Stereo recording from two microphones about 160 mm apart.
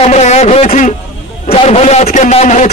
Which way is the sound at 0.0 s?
45° left (ahead or behind).